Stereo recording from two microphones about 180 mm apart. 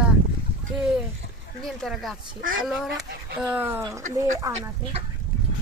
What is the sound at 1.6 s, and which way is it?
Speech, centre (ahead or behind).